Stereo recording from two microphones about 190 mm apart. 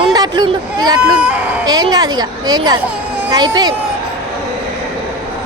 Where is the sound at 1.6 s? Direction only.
20° right (ahead or behind).